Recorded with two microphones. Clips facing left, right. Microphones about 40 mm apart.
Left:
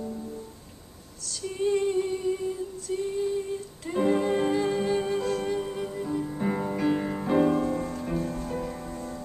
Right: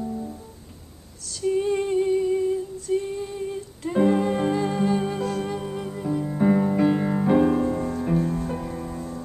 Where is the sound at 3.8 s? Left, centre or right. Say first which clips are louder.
Right 4 dB; centre.